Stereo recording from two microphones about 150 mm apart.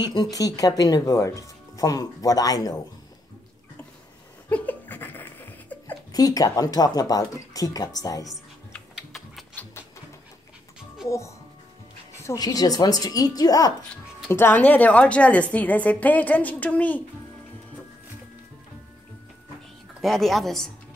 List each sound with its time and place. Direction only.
0.0 s speech: 30° left (ahead or behind)
4.5 s laughter: 10° left (ahead or behind)
6.1 s speech: 25° left (ahead or behind)
8.3 s typing: centre (ahead or behind)
11.1 s speech: 20° left (ahead or behind)
14.3 s a woman's voice: 15° left (ahead or behind)
20.0 s a woman's voice: centre (ahead or behind)